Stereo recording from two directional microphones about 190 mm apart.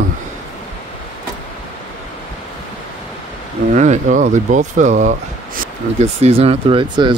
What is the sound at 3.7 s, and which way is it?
Speech, 40° right (ahead or behind).